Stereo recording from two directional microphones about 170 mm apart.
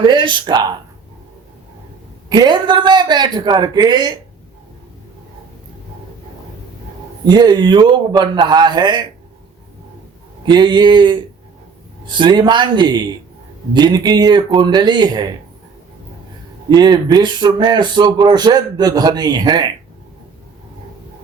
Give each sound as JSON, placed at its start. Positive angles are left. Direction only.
{"t": 0.0, "sound": "speech", "side_deg": -30}
{"t": 2.3, "sound": "speech", "side_deg": -25}
{"t": 7.3, "sound": "speech", "side_deg": -25}
{"t": 10.4, "sound": "speech", "side_deg": -25}
{"t": 16.6, "sound": "speech", "side_deg": -25}